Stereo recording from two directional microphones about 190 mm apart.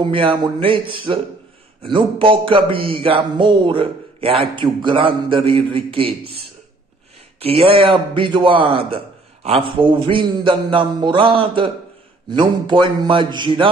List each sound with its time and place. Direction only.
0.0 s a man's voice: 25° right (ahead or behind)
7.3 s a man's voice: 30° right (ahead or behind)